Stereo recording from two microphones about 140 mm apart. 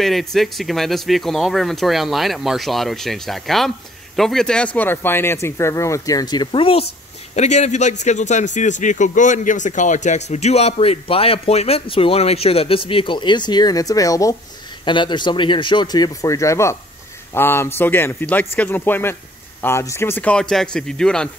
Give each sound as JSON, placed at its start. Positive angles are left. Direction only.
{"t": 0.0, "sound": "speech", "side_deg": 0}
{"t": 4.7, "sound": "speech", "side_deg": 15}
{"t": 7.3, "sound": "a man's voice", "side_deg": 55}